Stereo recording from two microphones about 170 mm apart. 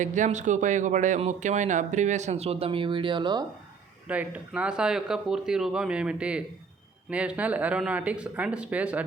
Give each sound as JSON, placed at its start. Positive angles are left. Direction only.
{"t": 0.0, "sound": "speech", "side_deg": -45}
{"t": 4.1, "sound": "speech", "side_deg": -10}